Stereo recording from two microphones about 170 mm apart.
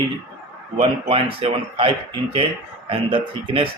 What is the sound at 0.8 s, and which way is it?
Speech, 35° right (ahead or behind).